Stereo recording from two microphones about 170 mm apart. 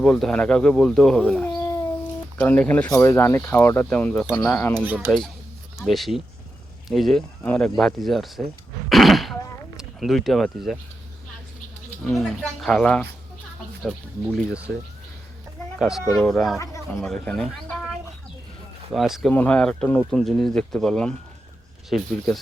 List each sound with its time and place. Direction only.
0.0 s speech: 5° left (ahead or behind)
4.8 s speech: 10° right (ahead or behind)
5.8 s speech: centre (ahead or behind)
8.9 s throat clearing: centre (ahead or behind)
12.0 s speech: centre (ahead or behind)
15.8 s speech: centre (ahead or behind)
16.6 s speech: 20° left (ahead or behind)
17.0 s speech: 5° left (ahead or behind)
18.9 s speech: centre (ahead or behind)